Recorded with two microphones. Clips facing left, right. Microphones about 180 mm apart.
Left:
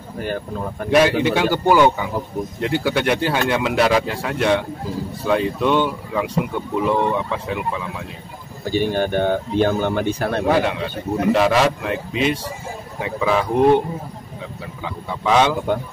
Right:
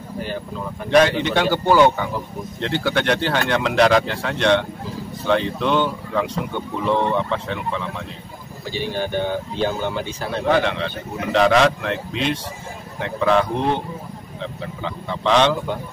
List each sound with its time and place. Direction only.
0.8 s speech: 5° left (ahead or behind)
8.6 s speech: 50° left (ahead or behind)
10.5 s speech: 5° left (ahead or behind)
14.8 s speech: 5° left (ahead or behind)